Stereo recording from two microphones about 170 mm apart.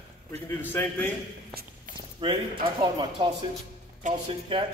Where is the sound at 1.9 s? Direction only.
50° right (ahead or behind).